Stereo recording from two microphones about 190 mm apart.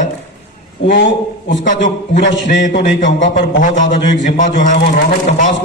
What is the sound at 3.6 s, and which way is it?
A man's voice, 40° left (ahead or behind).